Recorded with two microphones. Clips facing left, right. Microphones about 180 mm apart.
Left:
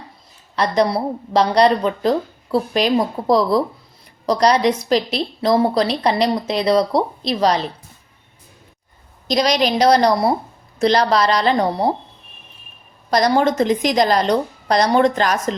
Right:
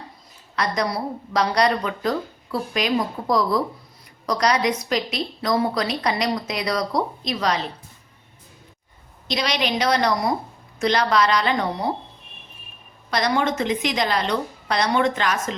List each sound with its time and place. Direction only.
0.5 s a woman's voice: 30° left (ahead or behind)
9.2 s a woman's voice: 40° left (ahead or behind)
13.1 s a woman's voice: 40° left (ahead or behind)